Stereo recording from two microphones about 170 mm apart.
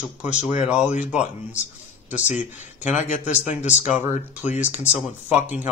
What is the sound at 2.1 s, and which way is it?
Speech, 45° left (ahead or behind).